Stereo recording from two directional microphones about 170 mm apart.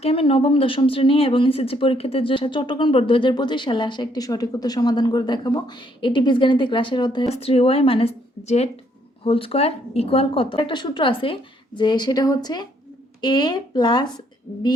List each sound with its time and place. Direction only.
0.0 s speech: 35° left (ahead or behind)